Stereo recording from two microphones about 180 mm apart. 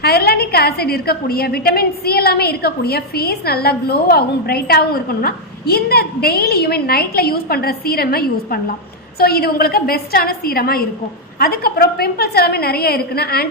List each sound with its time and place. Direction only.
0.0 s a woman's voice: 60° left (ahead or behind)